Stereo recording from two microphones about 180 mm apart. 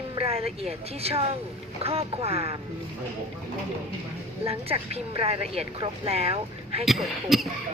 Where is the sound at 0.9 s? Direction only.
35° right (ahead or behind).